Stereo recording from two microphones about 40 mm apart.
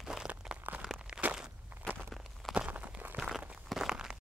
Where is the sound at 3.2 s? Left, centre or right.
Centre.